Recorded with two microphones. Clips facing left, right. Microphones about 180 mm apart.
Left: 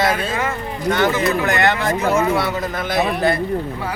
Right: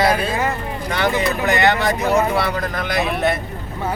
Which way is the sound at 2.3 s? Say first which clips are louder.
Left 1 dB; centre (ahead or behind).